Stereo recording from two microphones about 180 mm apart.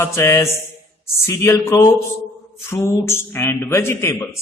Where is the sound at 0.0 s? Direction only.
15° left (ahead or behind).